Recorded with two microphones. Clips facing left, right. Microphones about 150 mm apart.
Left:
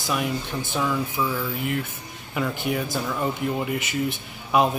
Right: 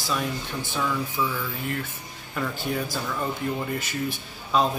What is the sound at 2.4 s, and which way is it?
Speech, 10° left (ahead or behind).